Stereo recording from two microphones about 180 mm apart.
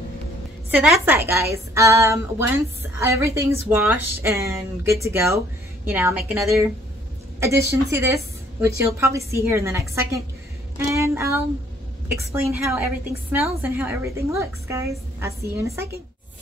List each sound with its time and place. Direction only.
0.7 s a woman's voice: 10° right (ahead or behind)
8.0 s a sound: 15° right (ahead or behind)
8.8 s a woman's voice: 15° right (ahead or behind)